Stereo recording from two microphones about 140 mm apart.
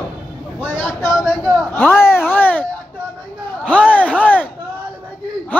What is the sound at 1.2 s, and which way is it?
Speech, centre (ahead or behind).